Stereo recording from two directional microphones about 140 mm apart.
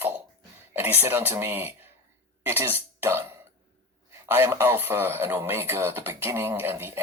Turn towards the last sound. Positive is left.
turn(degrees=-15)  # may be behind; listen again after turning